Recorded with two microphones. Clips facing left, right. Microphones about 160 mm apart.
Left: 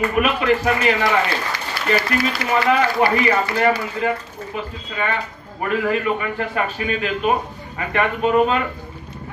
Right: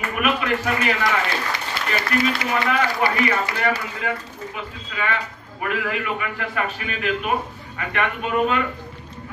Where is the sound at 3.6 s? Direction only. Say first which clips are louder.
Left 5 dB; 35° left (ahead or behind).